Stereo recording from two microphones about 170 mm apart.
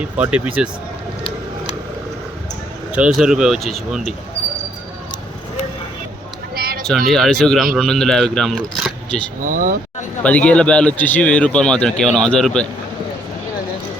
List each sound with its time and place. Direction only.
0.0 s speech: 5° right (ahead or behind)
2.9 s speech: 5° right (ahead or behind)
6.6 s a sound: 60° right (ahead or behind)
7.1 s speech: centre (ahead or behind)
9.4 s speech: 50° right (ahead or behind)
10.2 s speech: 5° left (ahead or behind)